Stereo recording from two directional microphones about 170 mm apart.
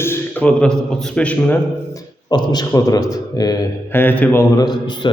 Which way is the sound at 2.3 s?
25° left (ahead or behind).